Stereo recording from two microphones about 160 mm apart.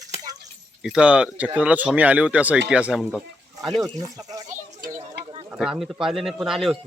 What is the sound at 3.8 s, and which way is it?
Speech, 20° right (ahead or behind).